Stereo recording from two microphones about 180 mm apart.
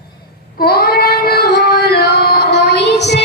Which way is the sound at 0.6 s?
55° left (ahead or behind).